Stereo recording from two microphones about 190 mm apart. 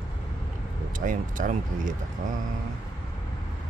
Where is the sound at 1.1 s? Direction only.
45° right (ahead or behind).